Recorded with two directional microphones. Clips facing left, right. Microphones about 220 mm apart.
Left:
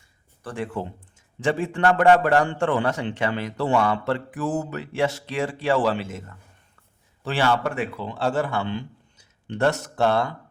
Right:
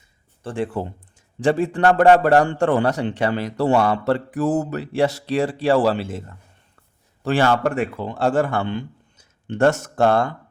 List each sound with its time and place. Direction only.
0.4 s a man's voice: 30° right (ahead or behind)
7.2 s a man's voice: 45° right (ahead or behind)